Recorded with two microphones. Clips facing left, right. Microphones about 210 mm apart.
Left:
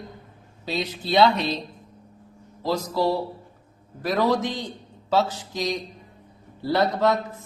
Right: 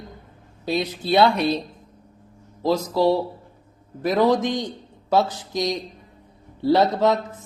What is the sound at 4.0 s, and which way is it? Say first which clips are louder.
A man's voice: right 4 dB; 20° right (ahead or behind).